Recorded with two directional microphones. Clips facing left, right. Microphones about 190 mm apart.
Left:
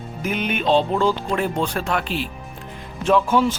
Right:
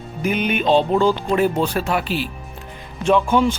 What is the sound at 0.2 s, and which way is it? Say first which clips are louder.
Speech: right 4 dB; centre (ahead or behind).